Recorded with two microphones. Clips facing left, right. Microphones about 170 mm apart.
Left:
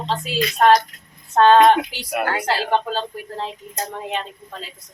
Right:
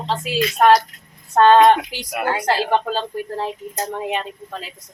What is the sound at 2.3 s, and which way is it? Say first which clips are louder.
Speech: right 4 dB; 15° right (ahead or behind).